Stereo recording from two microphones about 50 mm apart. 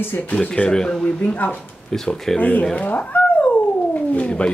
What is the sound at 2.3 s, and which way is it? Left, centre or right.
Speech, left.